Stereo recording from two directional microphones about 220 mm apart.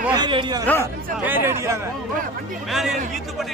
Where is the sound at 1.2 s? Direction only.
10° right (ahead or behind).